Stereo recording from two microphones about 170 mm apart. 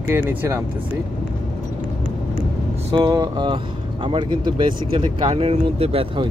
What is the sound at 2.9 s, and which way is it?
Speech, 25° right (ahead or behind).